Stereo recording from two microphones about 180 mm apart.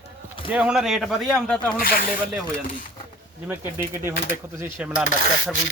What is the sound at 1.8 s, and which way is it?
Speech, 55° left (ahead or behind).